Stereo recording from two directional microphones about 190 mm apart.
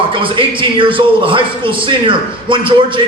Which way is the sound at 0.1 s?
25° right (ahead or behind).